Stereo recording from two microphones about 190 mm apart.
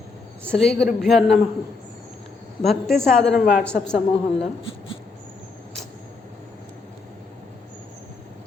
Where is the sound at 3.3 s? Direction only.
50° left (ahead or behind).